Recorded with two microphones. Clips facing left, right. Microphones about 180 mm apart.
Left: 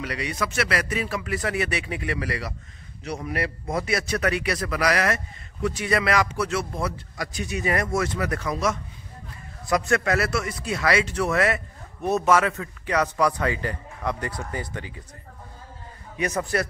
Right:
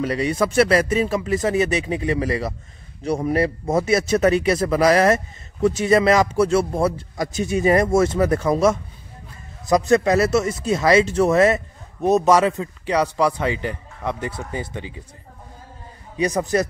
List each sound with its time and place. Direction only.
0.0 s speech: 30° right (ahead or behind)
3.7 s speech: 25° right (ahead or behind)
16.3 s speech: 20° right (ahead or behind)